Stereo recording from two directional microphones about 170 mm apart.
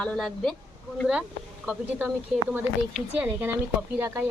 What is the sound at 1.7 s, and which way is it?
Speech, 10° right (ahead or behind).